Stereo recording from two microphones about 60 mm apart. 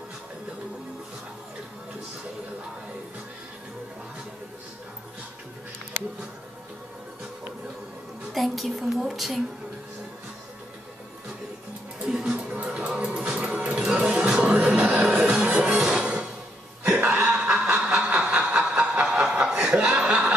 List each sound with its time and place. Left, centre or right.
8.3 s a woman's voice: centre
12.1 s music: centre
16.8 s a sound: centre